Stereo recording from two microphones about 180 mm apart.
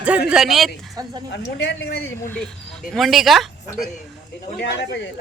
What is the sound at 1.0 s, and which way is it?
Speech, 20° right (ahead or behind).